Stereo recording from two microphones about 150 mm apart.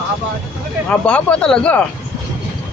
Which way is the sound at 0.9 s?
10° left (ahead or behind).